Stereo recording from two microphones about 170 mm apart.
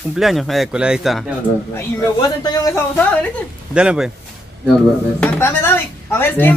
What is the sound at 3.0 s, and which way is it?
Speech, 5° left (ahead or behind).